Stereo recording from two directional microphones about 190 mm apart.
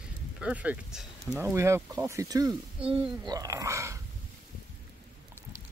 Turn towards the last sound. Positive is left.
turn(degrees=-15)  # may be behind; listen again after turning